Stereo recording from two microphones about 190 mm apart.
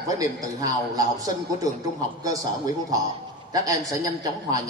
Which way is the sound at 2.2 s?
20° right (ahead or behind).